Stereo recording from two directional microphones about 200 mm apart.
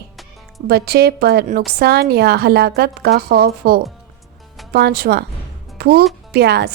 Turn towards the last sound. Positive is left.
turn(degrees=-55)  # may be behind; listen again after turning